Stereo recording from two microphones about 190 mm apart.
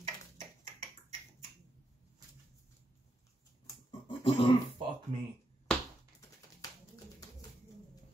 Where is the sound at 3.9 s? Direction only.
30° left (ahead or behind).